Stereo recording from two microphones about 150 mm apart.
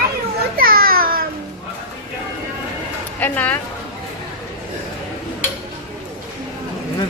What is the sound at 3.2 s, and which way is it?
Speech, 10° left (ahead or behind).